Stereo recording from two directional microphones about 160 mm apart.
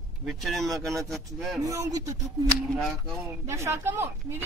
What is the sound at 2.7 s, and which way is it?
Speech, centre (ahead or behind).